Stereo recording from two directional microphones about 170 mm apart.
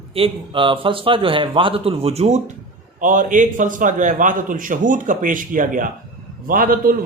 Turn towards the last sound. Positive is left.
turn(degrees=-55)  # may be behind; listen again after turning